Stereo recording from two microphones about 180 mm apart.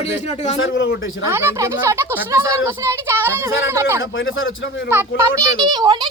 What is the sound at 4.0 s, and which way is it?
Speech, 90° left.